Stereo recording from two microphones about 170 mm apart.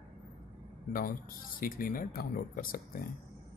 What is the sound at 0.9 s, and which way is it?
Speech, 55° left (ahead or behind).